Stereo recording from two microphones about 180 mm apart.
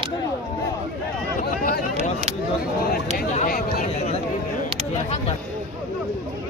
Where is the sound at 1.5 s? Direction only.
55° left (ahead or behind).